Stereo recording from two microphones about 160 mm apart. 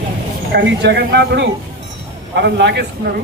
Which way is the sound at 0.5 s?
85° right.